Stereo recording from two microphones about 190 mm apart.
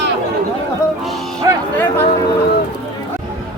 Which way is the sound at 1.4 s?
20° right (ahead or behind).